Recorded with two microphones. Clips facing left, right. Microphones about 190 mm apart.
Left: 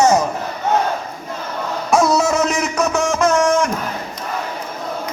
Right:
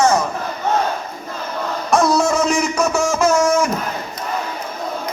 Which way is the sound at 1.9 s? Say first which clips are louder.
Even; 5° left (ahead or behind).